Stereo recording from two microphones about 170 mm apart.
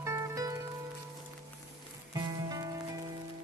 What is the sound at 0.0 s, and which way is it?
Music, 15° right (ahead or behind).